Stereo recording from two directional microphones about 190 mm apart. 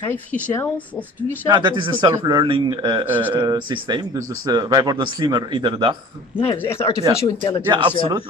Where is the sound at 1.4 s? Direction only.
25° right (ahead or behind).